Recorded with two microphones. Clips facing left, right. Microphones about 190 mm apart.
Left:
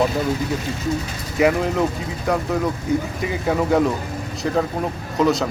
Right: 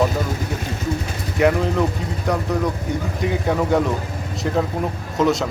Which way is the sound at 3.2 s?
Centre (ahead or behind).